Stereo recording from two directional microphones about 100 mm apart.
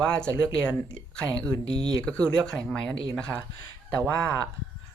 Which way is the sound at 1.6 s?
50° right (ahead or behind).